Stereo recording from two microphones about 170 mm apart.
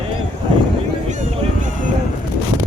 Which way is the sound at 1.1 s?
45° right (ahead or behind).